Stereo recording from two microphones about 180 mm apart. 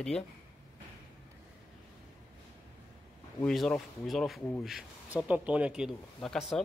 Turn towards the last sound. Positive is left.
turn(degrees=0)  # may be behind; listen again after turning